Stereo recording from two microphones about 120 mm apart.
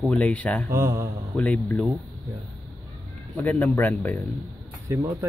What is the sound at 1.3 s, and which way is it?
Speech, 10° left (ahead or behind).